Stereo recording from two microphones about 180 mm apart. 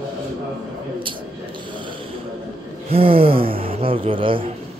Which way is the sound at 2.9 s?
30° right (ahead or behind).